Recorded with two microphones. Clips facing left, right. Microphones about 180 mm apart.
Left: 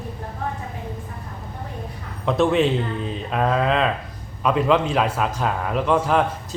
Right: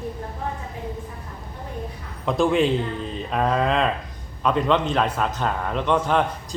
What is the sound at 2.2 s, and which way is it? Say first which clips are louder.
A man's voice: left 1 dB; centre (ahead or behind).